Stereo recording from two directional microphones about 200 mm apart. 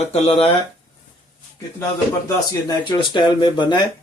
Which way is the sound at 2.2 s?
20° left (ahead or behind).